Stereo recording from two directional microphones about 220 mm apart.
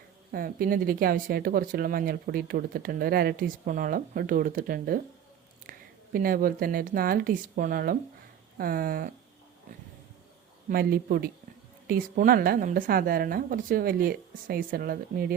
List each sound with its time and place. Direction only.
0.3 s speech: 40° right (ahead or behind)
6.1 s speech: 40° right (ahead or behind)
10.7 s speech: 45° right (ahead or behind)